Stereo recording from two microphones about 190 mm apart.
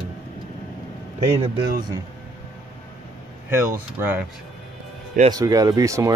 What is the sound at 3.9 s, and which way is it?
Speech, 10° right (ahead or behind).